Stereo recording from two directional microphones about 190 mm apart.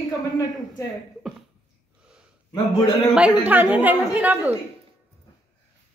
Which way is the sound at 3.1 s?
5° right (ahead or behind).